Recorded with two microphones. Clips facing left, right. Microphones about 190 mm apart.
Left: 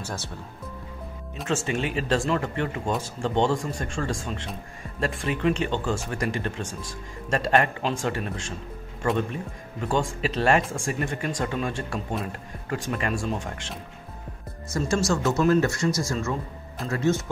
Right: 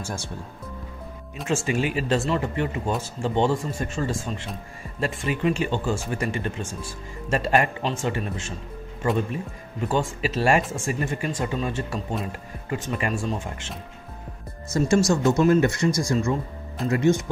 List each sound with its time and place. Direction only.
0.0 s speech: 10° right (ahead or behind)
1.5 s speech: 10° right (ahead or behind)
14.7 s speech: 25° right (ahead or behind)
15.0 s speech: 15° right (ahead or behind)